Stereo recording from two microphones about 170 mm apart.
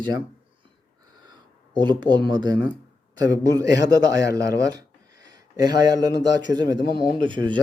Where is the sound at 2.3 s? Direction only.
25° right (ahead or behind).